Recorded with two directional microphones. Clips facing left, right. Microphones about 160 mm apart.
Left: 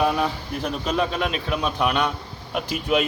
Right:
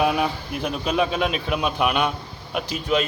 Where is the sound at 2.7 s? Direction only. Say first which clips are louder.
Left 1 dB; 5° left (ahead or behind).